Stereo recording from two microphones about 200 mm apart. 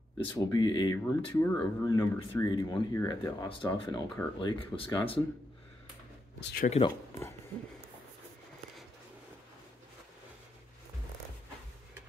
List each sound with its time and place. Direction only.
0.4 s speech: 20° left (ahead or behind)
6.4 s speech: 50° left (ahead or behind)